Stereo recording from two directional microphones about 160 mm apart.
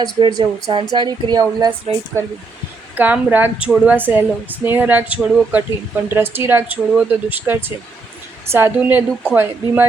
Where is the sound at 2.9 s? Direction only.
10° right (ahead or behind).